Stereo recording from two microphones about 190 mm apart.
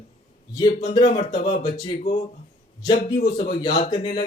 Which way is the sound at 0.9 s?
25° left (ahead or behind).